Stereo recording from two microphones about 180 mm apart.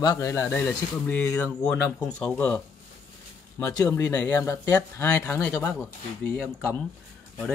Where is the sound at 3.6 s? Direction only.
20° left (ahead or behind).